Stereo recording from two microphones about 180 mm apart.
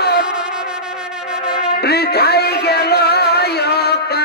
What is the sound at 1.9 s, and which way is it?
Music, 65° left (ahead or behind).